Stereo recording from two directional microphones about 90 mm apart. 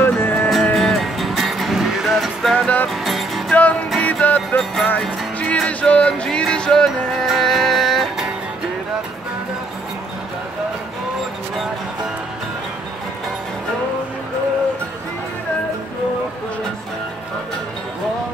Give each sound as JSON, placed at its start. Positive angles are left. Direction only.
{"t": 0.0, "sound": "music", "side_deg": 25}
{"t": 0.7, "sound": "music", "side_deg": 5}
{"t": 2.5, "sound": "music", "side_deg": 15}
{"t": 2.9, "sound": "music", "side_deg": 0}
{"t": 4.0, "sound": "music", "side_deg": 15}